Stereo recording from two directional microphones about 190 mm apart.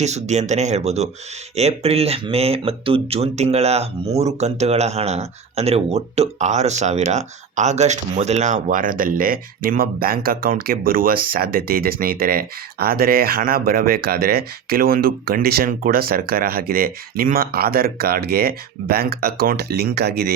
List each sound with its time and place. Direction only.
0.0 s speech: 35° right (ahead or behind); by 20.3 s 55° right (ahead or behind)